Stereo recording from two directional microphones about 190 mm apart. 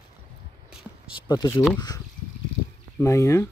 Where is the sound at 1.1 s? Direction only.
20° left (ahead or behind).